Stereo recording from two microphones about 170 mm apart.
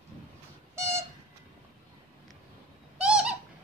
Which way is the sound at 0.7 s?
15° right (ahead or behind).